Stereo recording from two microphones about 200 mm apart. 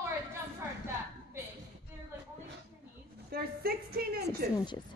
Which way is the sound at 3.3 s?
50° right (ahead or behind).